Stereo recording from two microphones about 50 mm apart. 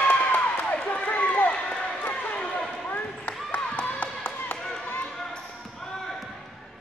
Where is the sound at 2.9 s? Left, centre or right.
Left.